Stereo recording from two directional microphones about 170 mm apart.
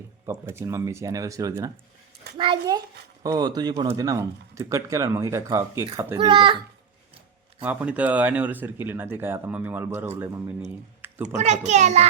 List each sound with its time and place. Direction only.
0.3 s speech: 15° right (ahead or behind)
6.1 s speech: 30° right (ahead or behind)
7.6 s speech: 10° right (ahead or behind)
11.0 s typing: 10° right (ahead or behind)
11.3 s a child's voice: 45° right (ahead or behind)